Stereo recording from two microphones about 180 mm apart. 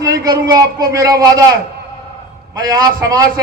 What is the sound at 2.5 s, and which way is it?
Speech, 20° right (ahead or behind).